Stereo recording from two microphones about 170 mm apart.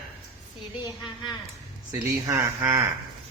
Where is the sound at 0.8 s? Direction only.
25° left (ahead or behind).